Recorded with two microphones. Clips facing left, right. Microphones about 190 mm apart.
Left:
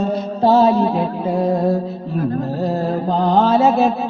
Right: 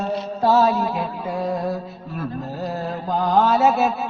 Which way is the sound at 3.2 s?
30° left (ahead or behind).